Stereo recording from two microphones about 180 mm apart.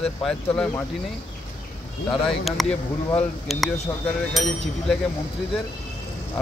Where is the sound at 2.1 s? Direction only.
Centre (ahead or behind).